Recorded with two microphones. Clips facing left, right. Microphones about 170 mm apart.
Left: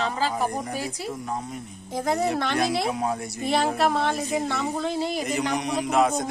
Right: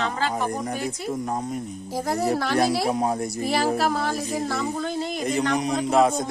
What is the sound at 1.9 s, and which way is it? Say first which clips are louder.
Speech: even; centre (ahead or behind).